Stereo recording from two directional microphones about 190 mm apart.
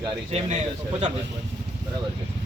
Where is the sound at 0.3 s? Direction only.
35° right (ahead or behind).